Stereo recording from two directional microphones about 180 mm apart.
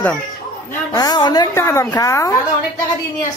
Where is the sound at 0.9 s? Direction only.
20° left (ahead or behind).